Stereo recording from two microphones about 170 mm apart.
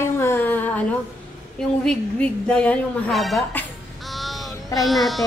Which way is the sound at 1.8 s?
5° left (ahead or behind).